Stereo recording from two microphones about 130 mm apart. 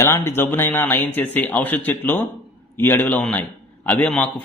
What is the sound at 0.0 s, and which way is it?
A man's voice, 20° left (ahead or behind).